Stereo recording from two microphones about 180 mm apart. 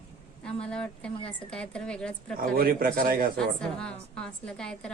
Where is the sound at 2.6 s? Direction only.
55° right (ahead or behind).